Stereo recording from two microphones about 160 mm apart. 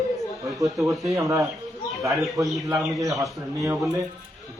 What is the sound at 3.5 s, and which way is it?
Speech, 20° right (ahead or behind).